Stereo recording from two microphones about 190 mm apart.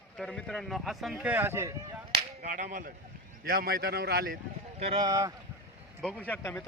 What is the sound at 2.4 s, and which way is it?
Whip, 45° right (ahead or behind).